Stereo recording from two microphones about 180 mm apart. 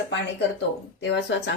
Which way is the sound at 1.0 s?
75° left (ahead or behind).